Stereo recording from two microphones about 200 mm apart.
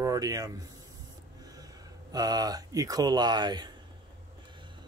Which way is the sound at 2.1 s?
20° right (ahead or behind).